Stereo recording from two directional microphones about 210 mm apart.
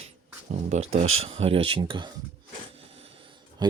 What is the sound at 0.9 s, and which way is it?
Speech, 30° right (ahead or behind).